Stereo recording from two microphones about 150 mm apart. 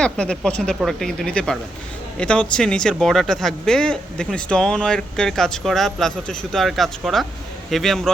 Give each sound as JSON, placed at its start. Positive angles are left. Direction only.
{"t": 0.0, "sound": "speech", "side_deg": 5}